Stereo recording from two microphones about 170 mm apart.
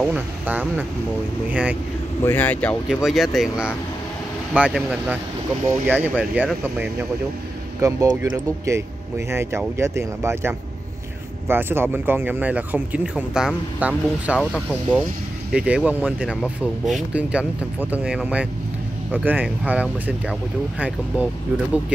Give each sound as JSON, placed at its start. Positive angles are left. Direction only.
{"t": 0.0, "sound": "speech", "side_deg": -10}
{"t": 2.2, "sound": "speech", "side_deg": 10}
{"t": 7.8, "sound": "speech", "side_deg": -20}
{"t": 14.4, "sound": "speech", "side_deg": 10}
{"t": 15.5, "sound": "speech", "side_deg": -5}